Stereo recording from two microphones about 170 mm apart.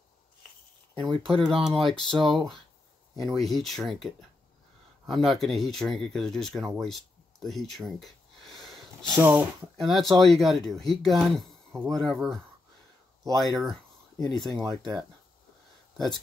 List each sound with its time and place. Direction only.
0.9 s speech: 30° right (ahead or behind)
1.2 s speech: centre (ahead or behind)
9.2 s speech: 10° right (ahead or behind)
9.8 s speech: centre (ahead or behind)
13.4 s speech: centre (ahead or behind)